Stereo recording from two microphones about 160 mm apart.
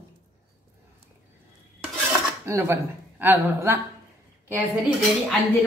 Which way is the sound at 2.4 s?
20° right (ahead or behind).